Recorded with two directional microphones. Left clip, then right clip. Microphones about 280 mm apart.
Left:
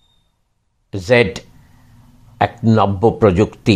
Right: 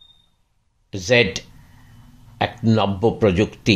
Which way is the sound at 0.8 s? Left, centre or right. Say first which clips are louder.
Left 3 dB; centre.